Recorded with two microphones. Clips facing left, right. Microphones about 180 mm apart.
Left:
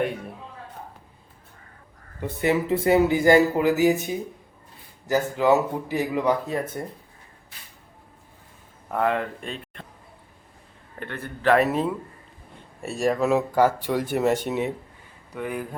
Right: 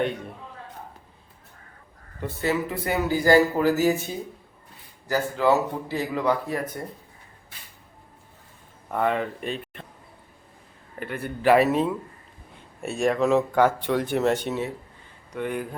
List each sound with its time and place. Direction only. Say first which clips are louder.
2.2 s speech: left 3 dB; 20° left (ahead or behind)
8.9 s speech: even; centre (ahead or behind)
11.0 s speech: right 2 dB; 10° right (ahead or behind); by 14.7 s 15° left (ahead or behind)
15.3 s speech: right 1 dB; centre (ahead or behind)